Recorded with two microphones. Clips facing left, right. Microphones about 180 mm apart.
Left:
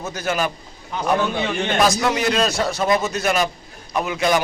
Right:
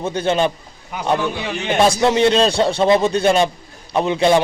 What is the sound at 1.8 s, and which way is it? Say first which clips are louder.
A man's voice: right 6 dB; 30° right (ahead or behind).